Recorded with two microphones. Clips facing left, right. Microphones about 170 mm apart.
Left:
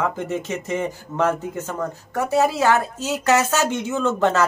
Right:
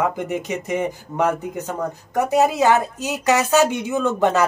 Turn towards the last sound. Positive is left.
turn(degrees=-15)  # may be behind; listen again after turning